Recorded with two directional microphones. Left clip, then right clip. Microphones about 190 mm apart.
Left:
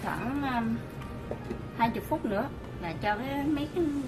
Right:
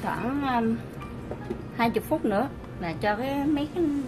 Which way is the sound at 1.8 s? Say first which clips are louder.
Right 3 dB; 50° right (ahead or behind).